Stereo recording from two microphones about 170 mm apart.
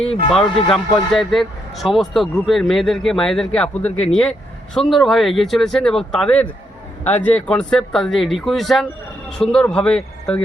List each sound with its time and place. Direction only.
0.0 s speech: 35° left (ahead or behind)
0.3 s speech: centre (ahead or behind)